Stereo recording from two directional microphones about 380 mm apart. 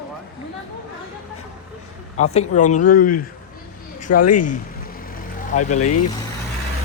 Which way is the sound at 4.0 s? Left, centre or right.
Left.